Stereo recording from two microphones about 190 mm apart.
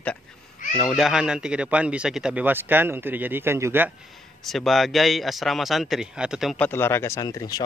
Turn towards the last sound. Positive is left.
turn(degrees=20)  # may be behind; listen again after turning